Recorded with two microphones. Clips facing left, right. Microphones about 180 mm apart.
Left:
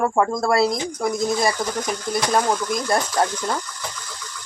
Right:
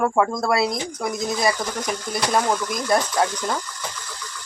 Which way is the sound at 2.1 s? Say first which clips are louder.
Left 1 dB; centre (ahead or behind).